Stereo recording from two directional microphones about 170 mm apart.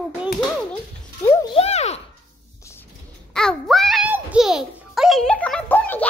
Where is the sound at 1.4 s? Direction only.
35° left (ahead or behind).